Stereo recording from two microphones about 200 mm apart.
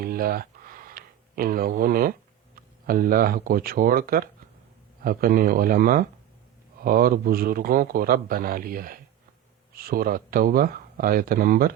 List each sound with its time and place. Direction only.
0.0 s tick-tock: 45° right (ahead or behind)
2.6 s a man's voice: 45° right (ahead or behind)